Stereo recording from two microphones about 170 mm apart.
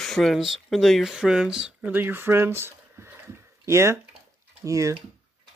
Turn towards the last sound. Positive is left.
turn(degrees=-20)  # may be behind; listen again after turning